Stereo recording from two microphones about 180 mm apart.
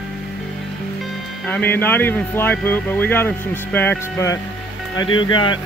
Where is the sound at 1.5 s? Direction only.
10° left (ahead or behind).